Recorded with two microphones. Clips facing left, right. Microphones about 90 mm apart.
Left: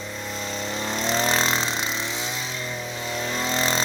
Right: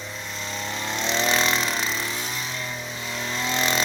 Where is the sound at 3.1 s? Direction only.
35° left (ahead or behind).